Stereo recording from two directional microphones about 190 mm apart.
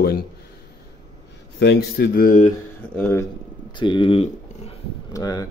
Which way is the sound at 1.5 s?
60° left (ahead or behind).